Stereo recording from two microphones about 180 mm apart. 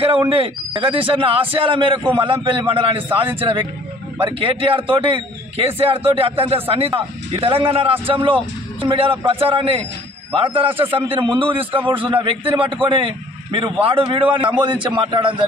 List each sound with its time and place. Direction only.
0.3 s a man's voice: 30° right (ahead or behind)